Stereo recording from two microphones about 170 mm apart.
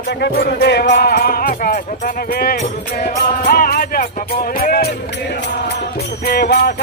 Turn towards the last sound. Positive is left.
turn(degrees=70)  # may be behind; listen again after turning